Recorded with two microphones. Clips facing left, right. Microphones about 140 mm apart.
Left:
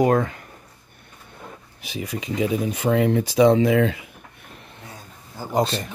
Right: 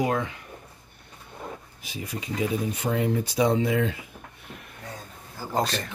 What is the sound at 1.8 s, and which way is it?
Speech, 85° left.